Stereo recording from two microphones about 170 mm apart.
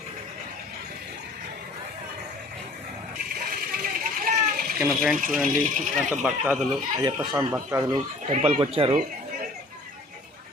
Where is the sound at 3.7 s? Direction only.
55° right (ahead or behind).